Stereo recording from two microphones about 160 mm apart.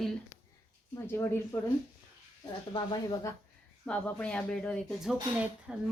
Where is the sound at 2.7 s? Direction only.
25° left (ahead or behind).